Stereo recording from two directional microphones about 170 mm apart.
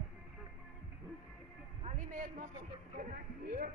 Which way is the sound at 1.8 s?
50° right (ahead or behind).